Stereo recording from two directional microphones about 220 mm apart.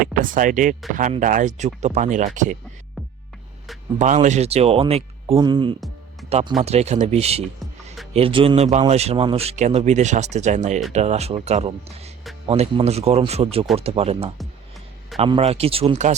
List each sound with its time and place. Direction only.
0.0 s speech: 40° right (ahead or behind)
3.9 s a man's voice: 35° right (ahead or behind)